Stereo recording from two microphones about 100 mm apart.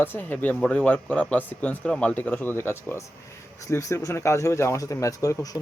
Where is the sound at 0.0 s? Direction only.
20° left (ahead or behind).